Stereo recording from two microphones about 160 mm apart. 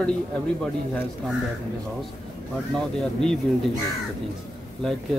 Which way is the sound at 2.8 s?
5° left (ahead or behind).